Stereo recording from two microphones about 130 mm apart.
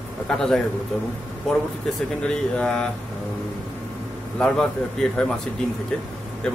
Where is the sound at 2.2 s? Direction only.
5° left (ahead or behind).